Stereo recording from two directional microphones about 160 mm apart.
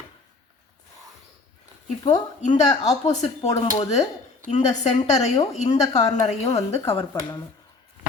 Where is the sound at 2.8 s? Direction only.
45° left (ahead or behind).